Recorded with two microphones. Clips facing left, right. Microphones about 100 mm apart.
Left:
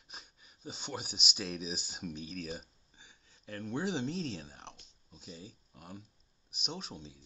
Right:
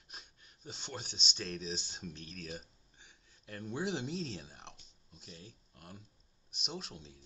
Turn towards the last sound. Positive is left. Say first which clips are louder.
# left 2 dB
turn(degrees=0)  # may be behind; listen again after turning